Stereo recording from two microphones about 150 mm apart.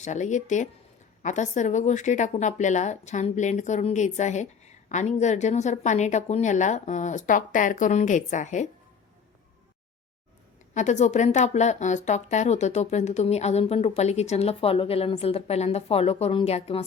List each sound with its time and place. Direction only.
0.0 s speech: 55° left (ahead or behind)
10.8 s speech: 50° left (ahead or behind)